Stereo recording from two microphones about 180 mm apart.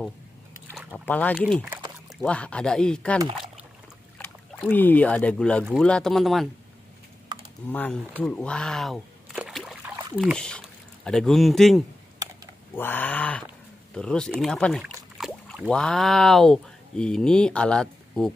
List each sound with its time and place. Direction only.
0.7 s speech: 10° left (ahead or behind)
4.2 s speech: 10° left (ahead or behind)
7.7 s speech: 10° left (ahead or behind)
8.2 s a sound: 5° left (ahead or behind)
11.1 s speech: 5° left (ahead or behind)